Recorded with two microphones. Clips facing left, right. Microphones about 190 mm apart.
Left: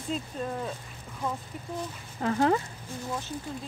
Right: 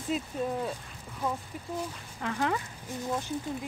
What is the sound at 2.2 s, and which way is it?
Speech, 35° left (ahead or behind).